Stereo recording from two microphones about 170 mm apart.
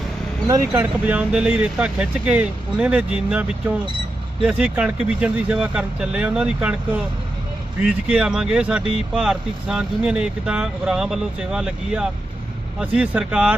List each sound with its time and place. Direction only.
0.4 s speech: 15° right (ahead or behind)